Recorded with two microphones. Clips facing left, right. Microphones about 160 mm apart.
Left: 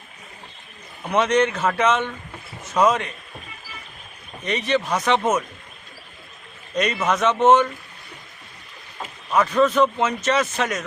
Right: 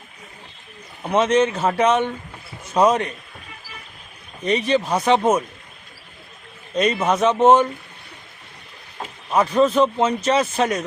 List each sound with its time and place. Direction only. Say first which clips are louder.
1.0 s a man's voice: right 2 dB; 30° right (ahead or behind)
4.4 s speech: right 3 dB; 35° right (ahead or behind)
6.7 s speech: right 3 dB; 30° right (ahead or behind)
9.3 s a man's voice: right 1 dB; 30° right (ahead or behind)